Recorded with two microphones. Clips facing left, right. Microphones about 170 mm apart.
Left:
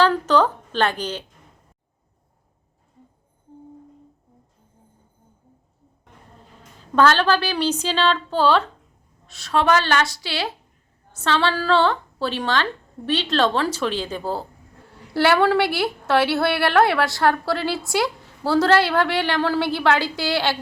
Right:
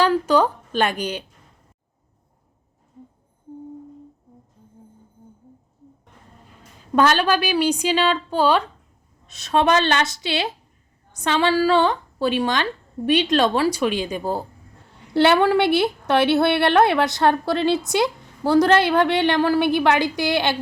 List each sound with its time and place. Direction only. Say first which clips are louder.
0.0 s a woman's voice: even; 10° right (ahead or behind)
6.6 s a woman's voice: even; 15° right (ahead or behind)